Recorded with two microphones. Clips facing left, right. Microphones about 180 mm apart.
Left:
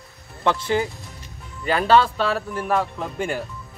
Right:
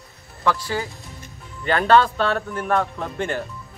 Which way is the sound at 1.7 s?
5° left (ahead or behind).